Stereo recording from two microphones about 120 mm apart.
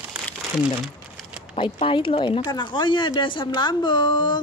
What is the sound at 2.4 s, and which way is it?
Speech, 35° left (ahead or behind).